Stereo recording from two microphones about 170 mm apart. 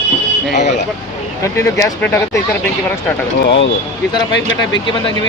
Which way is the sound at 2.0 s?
10° left (ahead or behind).